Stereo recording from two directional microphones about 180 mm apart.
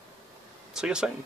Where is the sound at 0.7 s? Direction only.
5° right (ahead or behind).